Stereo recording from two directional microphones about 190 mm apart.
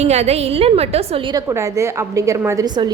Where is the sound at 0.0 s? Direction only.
35° right (ahead or behind).